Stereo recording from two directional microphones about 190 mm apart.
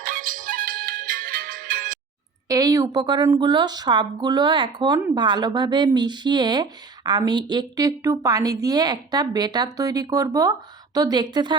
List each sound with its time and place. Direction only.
0.0 s music: 45° right (ahead or behind)
2.5 s speech: 20° right (ahead or behind)